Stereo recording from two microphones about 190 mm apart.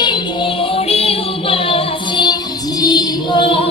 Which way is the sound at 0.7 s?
30° left (ahead or behind).